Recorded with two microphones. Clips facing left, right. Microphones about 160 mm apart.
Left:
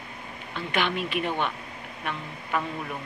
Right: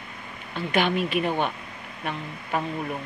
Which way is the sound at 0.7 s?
40° right (ahead or behind).